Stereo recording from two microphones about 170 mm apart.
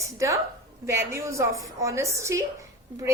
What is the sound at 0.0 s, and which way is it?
A woman's voice, 15° right (ahead or behind).